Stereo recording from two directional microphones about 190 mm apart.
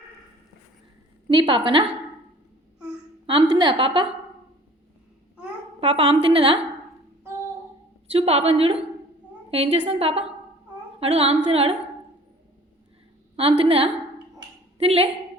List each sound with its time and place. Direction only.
1.3 s a woman's voice: 25° right (ahead or behind)
3.2 s a woman's voice: 25° right (ahead or behind)
5.8 s a woman's voice: 30° right (ahead or behind)
8.1 s a woman's voice: 30° right (ahead or behind)
13.3 s a woman's voice: 30° right (ahead or behind)